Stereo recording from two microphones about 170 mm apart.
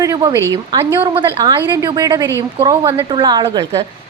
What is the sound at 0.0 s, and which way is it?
A woman's voice, 20° right (ahead or behind).